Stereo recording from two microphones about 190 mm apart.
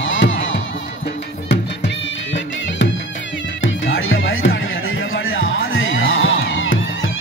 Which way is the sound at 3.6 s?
90° left.